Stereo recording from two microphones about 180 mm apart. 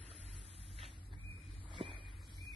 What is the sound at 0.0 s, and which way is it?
Vehicle, 35° right (ahead or behind).